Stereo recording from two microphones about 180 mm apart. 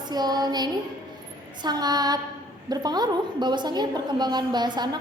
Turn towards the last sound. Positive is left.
turn(degrees=-25)  # may be behind; listen again after turning